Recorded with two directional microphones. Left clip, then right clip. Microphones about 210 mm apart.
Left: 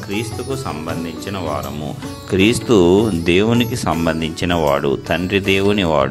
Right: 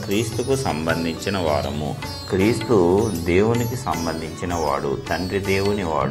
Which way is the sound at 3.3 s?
50° left (ahead or behind).